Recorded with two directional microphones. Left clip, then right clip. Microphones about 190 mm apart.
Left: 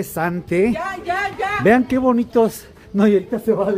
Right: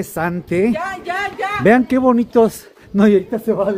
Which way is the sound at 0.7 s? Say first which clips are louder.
Right 1 dB; 35° right (ahead or behind).